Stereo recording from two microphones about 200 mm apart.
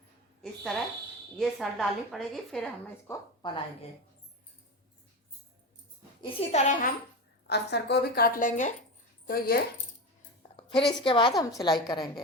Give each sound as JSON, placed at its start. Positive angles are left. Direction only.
{"t": 0.4, "sound": "a sound", "side_deg": 0}
{"t": 1.4, "sound": "a woman's voice", "side_deg": 0}
{"t": 3.1, "sound": "speech", "side_deg": 25}
{"t": 6.2, "sound": "a child's voice", "side_deg": 35}
{"t": 7.4, "sound": "a woman's voice", "side_deg": 55}
{"t": 10.6, "sound": "a woman's voice", "side_deg": 25}